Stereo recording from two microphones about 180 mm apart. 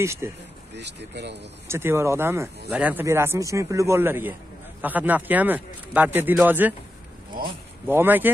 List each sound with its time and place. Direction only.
0.0 s speech: 15° right (ahead or behind)
0.7 s speech: 70° right (ahead or behind)
1.7 s speech: 15° right (ahead or behind)
7.8 s speech: 10° right (ahead or behind)